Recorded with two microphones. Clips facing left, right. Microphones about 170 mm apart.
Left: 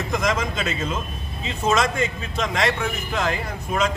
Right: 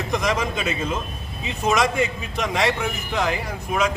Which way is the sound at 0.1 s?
15° right (ahead or behind).